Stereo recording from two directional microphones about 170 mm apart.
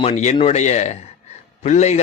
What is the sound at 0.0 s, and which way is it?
A man's voice, 40° left (ahead or behind).